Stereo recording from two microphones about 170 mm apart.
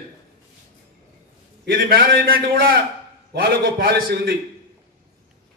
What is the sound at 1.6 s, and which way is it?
A man's voice, 65° right (ahead or behind).